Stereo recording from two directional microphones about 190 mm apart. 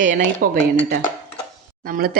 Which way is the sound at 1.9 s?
50° right (ahead or behind).